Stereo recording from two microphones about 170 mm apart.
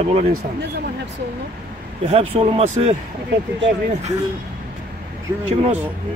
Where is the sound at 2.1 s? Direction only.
35° right (ahead or behind).